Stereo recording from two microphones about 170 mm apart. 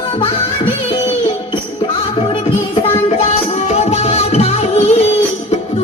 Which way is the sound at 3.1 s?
40° left (ahead or behind).